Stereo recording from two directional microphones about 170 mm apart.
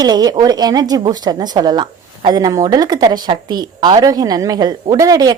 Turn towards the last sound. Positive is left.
turn(degrees=-20)  # may be behind; listen again after turning